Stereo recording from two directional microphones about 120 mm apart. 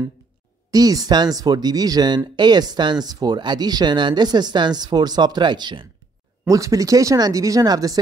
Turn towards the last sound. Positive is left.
turn(degrees=-30)  # may be behind; listen again after turning